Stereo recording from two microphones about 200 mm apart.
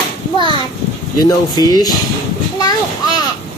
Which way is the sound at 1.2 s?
20° left (ahead or behind).